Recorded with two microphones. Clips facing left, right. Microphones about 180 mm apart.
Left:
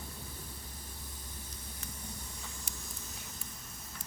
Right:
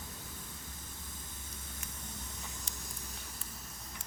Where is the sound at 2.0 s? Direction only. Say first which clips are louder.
Left 1 dB; 20° right (ahead or behind).